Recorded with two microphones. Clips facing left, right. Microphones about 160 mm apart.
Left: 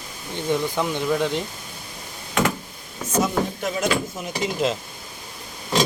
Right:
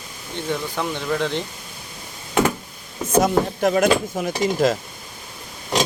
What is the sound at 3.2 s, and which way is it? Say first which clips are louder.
Speech: right 5 dB; 55° right (ahead or behind).